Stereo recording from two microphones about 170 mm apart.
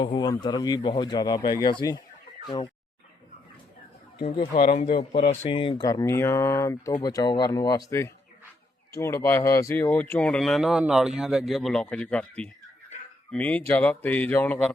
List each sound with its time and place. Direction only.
0.0 s speech: 25° left (ahead or behind)
4.3 s a man's voice: 35° left (ahead or behind); by 5.3 s 55° left (ahead or behind)
5.3 s speech: 35° left (ahead or behind); by 14.7 s 10° left (ahead or behind)